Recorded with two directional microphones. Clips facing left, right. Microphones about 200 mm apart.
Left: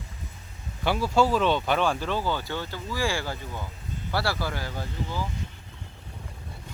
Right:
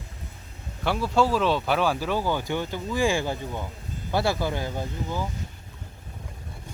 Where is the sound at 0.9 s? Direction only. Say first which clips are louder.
Even; centre (ahead or behind); by 5.2 s 20° right (ahead or behind).